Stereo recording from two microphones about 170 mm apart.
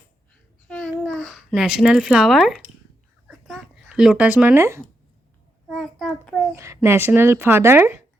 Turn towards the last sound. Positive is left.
turn(degrees=-15)  # may be behind; listen again after turning